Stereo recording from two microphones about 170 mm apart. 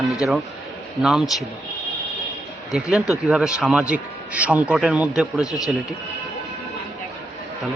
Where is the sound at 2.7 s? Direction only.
5° right (ahead or behind).